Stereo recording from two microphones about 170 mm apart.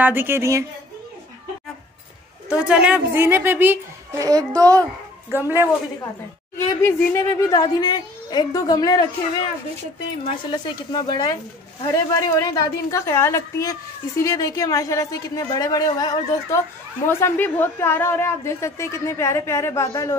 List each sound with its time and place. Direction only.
0.0 s a woman's voice: 10° right (ahead or behind)
2.5 s a woman's voice: 5° right (ahead or behind)
6.5 s a woman's voice: 15° left (ahead or behind)
10.2 s a woman's voice: 30° left (ahead or behind)